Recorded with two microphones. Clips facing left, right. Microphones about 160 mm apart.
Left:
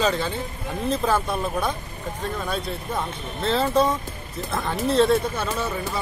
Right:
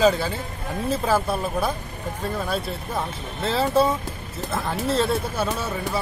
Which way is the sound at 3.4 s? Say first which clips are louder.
Even; 5° right (ahead or behind).